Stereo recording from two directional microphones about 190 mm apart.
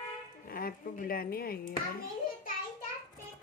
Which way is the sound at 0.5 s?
50° left (ahead or behind).